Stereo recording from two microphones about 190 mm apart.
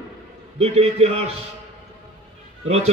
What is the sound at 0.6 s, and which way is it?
Speech, 30° right (ahead or behind).